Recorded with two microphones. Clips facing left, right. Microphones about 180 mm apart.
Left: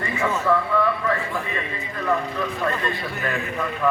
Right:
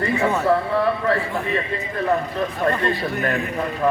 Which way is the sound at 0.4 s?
35° right (ahead or behind).